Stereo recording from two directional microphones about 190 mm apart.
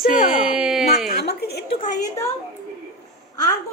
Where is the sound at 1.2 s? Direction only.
60° left (ahead or behind).